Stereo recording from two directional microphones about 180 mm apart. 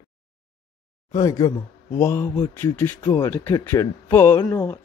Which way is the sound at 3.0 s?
25° left (ahead or behind).